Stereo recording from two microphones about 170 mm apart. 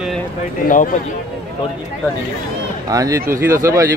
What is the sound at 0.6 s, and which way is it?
Speech, 55° left (ahead or behind).